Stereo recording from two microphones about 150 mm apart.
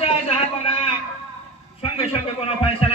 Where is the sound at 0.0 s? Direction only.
40° left (ahead or behind).